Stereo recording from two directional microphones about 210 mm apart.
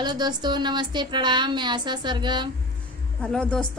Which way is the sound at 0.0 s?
20° right (ahead or behind).